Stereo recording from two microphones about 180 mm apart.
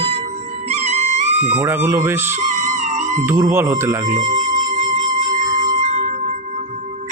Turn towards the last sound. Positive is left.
turn(degrees=-40)  # may be behind; listen again after turning